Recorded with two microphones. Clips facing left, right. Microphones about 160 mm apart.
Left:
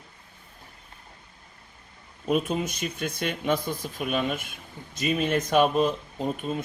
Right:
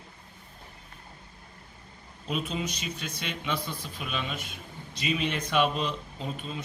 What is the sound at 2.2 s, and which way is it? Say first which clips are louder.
Speech: left 6 dB; 50° left (ahead or behind).